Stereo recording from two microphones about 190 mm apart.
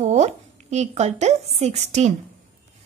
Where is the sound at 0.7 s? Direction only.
35° right (ahead or behind).